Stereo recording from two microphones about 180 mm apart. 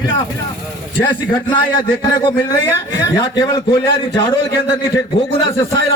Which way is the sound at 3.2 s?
20° left (ahead or behind).